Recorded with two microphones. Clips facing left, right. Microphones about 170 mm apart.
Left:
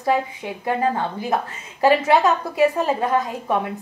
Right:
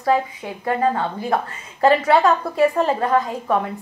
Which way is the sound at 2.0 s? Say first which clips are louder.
Right 1 dB; 15° left (ahead or behind).